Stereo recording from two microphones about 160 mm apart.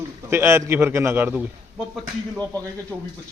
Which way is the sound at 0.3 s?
15° right (ahead or behind).